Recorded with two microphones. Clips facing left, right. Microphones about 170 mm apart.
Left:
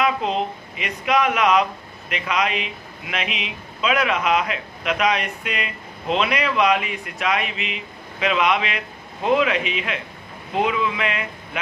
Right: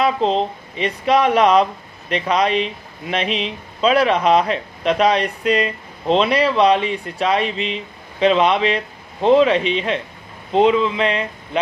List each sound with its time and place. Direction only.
0.0 s a man's voice: 30° right (ahead or behind)